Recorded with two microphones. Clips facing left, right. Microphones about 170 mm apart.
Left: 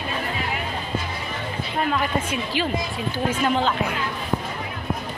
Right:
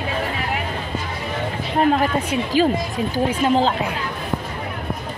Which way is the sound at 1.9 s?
40° right (ahead or behind).